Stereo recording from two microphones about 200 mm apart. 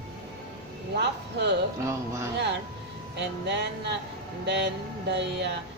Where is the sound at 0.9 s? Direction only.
60° right (ahead or behind).